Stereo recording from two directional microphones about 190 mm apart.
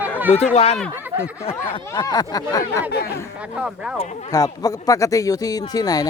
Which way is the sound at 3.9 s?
35° left (ahead or behind).